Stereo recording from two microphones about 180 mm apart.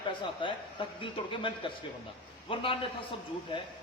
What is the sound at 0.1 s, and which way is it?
A man's voice, 25° left (ahead or behind).